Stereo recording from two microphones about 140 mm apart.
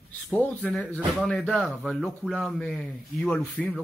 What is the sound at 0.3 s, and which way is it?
Speech, 10° left (ahead or behind).